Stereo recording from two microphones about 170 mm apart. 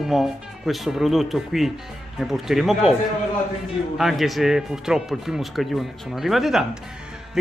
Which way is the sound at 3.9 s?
Centre (ahead or behind).